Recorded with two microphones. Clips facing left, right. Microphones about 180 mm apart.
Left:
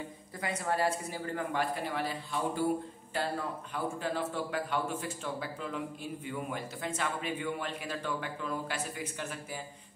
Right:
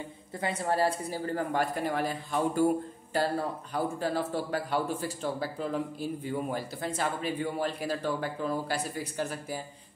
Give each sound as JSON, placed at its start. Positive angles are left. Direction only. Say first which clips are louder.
{"t": 0.4, "sound": "speech", "louder": "right 4 dB", "side_deg": -30}